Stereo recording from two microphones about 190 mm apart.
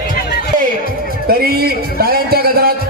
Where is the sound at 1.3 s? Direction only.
55° right (ahead or behind).